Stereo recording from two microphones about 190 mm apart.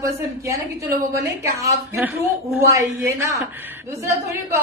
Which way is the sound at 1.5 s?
15° right (ahead or behind).